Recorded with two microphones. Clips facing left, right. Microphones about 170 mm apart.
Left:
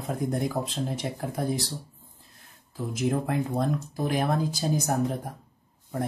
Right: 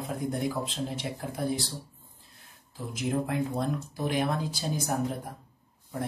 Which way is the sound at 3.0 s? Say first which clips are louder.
Left 2 dB; 45° left (ahead or behind).